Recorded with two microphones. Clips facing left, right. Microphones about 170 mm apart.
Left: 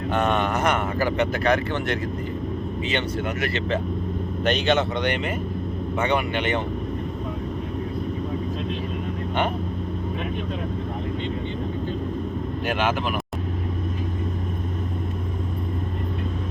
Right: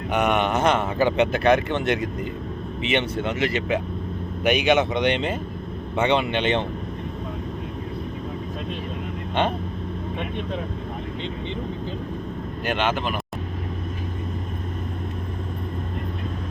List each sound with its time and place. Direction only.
0.1 s speech: 15° right (ahead or behind)
12.6 s speech: centre (ahead or behind)